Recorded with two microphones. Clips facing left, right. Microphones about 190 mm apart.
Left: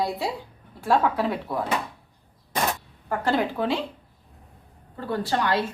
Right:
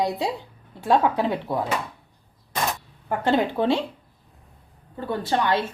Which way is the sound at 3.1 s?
25° right (ahead or behind).